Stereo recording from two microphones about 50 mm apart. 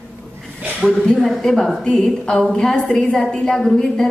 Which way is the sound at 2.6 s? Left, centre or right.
Centre.